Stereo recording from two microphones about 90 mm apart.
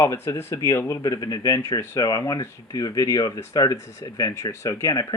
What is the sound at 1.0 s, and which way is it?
Speech, 45° left (ahead or behind).